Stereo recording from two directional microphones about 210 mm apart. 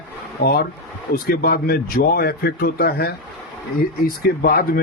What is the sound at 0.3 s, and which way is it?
Speech, 45° left (ahead or behind).